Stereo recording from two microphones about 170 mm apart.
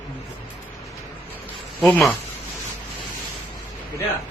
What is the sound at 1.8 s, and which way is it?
Speech, centre (ahead or behind).